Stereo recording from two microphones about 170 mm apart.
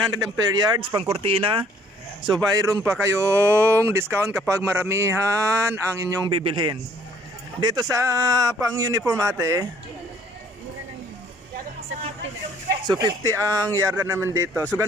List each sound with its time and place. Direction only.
0.1 s speech: 20° right (ahead or behind)
2.3 s speech: 20° right (ahead or behind)
6.4 s speech: 30° right (ahead or behind)
12.9 s speech: 25° right (ahead or behind)